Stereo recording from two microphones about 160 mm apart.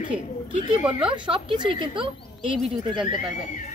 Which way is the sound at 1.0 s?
30° right (ahead or behind).